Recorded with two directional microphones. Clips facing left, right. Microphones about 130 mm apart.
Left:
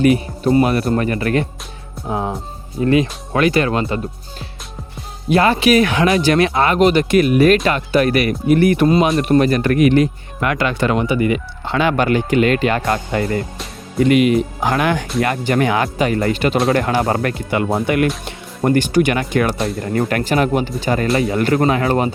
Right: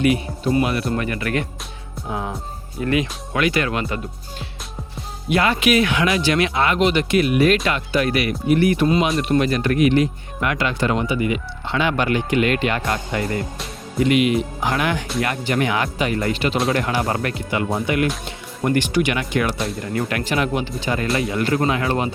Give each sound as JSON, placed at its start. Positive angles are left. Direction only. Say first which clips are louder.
{"t": 0.0, "sound": "speech", "louder": "left 5 dB", "side_deg": 40}
{"t": 8.9, "sound": "speech", "louder": "left 4 dB", "side_deg": 40}
{"t": 18.6, "sound": "speech", "louder": "left 5 dB", "side_deg": 40}
{"t": 19.5, "sound": "speech", "louder": "left 4 dB", "side_deg": 0}
{"t": 19.9, "sound": "speech", "louder": "left 6 dB", "side_deg": 45}
{"t": 21.6, "sound": "speech", "louder": "left 5 dB", "side_deg": 40}